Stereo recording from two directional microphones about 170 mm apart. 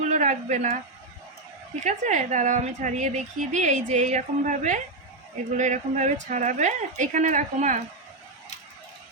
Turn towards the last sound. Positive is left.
turn(degrees=-45)  # may be behind; listen again after turning